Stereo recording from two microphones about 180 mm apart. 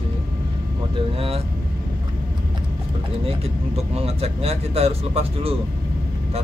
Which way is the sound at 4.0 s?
35° right (ahead or behind).